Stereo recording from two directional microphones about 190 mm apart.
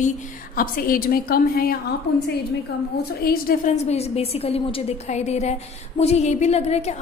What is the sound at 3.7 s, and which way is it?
A woman's voice, 35° left (ahead or behind).